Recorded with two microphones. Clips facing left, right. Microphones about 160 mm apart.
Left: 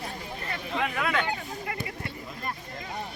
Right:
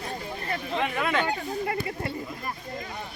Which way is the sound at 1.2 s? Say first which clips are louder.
Right 5 dB; 35° right (ahead or behind).